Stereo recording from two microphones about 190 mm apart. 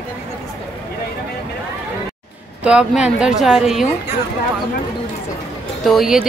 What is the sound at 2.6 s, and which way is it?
Speech, 5° right (ahead or behind).